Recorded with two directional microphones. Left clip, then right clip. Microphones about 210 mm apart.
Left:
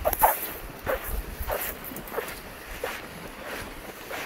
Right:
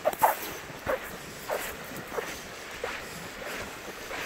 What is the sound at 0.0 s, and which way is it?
Dog, 45° left (ahead or behind).